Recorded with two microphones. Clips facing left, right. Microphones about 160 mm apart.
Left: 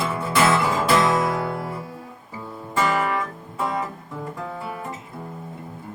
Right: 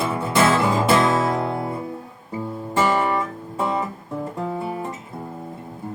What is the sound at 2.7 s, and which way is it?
Guitar, 25° right (ahead or behind).